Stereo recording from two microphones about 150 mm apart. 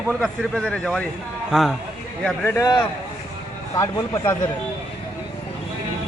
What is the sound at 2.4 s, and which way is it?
Speech, 20° left (ahead or behind).